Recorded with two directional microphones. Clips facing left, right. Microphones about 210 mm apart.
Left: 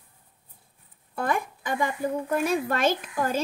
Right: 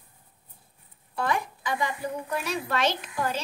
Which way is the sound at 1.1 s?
50° left (ahead or behind).